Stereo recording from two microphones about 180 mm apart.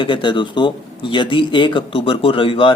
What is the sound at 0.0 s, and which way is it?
Speech, 25° left (ahead or behind).